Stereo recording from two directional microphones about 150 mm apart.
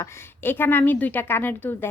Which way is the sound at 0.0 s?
15° left (ahead or behind).